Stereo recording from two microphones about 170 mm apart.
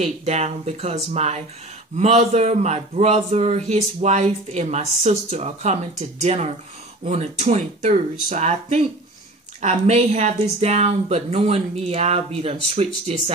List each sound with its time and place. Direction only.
0.0 s speech: 40° right (ahead or behind)